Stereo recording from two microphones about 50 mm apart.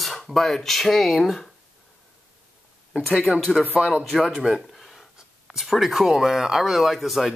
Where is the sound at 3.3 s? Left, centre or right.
Right.